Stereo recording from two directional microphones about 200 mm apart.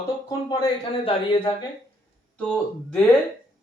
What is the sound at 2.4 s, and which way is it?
Speech, 5° left (ahead or behind).